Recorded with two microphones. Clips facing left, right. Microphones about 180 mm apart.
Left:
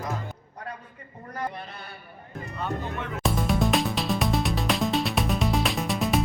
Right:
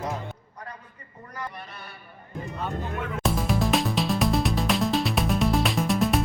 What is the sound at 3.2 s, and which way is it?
Music, centre (ahead or behind).